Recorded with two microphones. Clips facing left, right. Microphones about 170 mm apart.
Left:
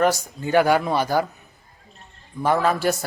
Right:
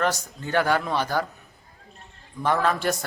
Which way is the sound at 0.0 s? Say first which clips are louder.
Left 5 dB; 10° left (ahead or behind).